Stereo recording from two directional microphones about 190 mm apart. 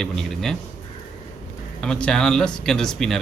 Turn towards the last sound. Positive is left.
turn(degrees=0)  # may be behind; listen again after turning